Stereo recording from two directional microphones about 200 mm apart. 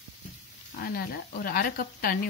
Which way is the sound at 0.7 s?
50° left (ahead or behind).